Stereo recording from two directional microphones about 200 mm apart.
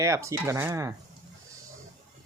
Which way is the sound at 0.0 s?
15° right (ahead or behind).